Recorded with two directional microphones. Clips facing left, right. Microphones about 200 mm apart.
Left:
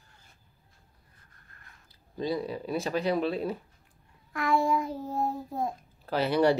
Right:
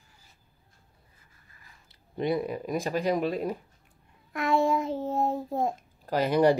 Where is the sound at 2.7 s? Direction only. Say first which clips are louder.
Right 1 dB; 10° right (ahead or behind).